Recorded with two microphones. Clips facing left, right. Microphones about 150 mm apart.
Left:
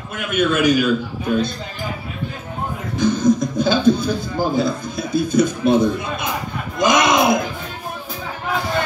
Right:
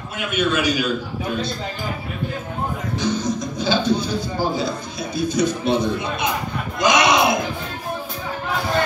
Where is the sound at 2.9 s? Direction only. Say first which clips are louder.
Left 8 dB; 50° left (ahead or behind).